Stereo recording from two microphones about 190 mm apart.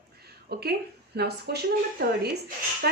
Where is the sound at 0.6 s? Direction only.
60° right (ahead or behind).